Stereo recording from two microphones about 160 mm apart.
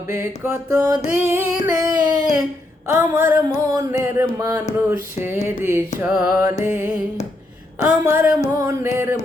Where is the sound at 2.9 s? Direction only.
15° right (ahead or behind).